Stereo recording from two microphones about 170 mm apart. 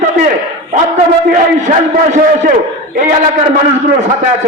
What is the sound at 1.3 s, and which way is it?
A man's voice, 50° right (ahead or behind).